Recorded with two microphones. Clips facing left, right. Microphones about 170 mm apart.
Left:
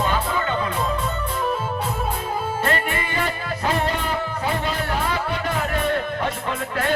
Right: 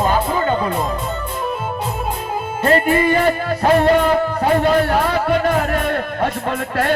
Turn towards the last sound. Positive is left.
turn(degrees=-55)  # may be behind; listen again after turning